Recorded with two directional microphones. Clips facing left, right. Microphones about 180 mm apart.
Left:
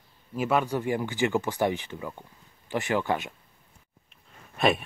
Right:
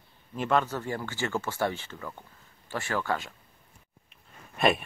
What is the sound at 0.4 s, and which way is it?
Speech, 10° left (ahead or behind).